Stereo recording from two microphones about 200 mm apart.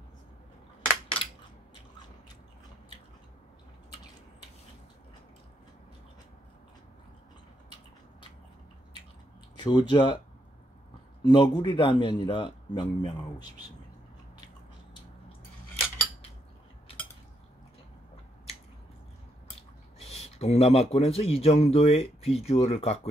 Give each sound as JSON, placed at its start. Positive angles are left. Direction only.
{"t": 1.1, "sound": "a sound", "side_deg": 5}
{"t": 9.6, "sound": "a man's voice", "side_deg": 20}
{"t": 11.2, "sound": "a man's voice", "side_deg": 20}
{"t": 20.0, "sound": "speech", "side_deg": 30}